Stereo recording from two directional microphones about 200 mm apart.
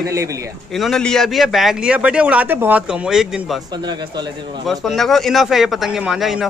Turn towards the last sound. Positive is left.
turn(degrees=0)  # may be behind; listen again after turning